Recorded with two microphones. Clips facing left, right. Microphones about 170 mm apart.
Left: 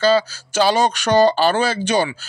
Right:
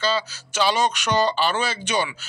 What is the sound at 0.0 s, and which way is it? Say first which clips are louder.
Speech: left 9 dB; 40° left (ahead or behind).